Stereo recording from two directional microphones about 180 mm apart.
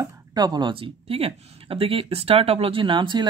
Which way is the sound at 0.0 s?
20° right (ahead or behind).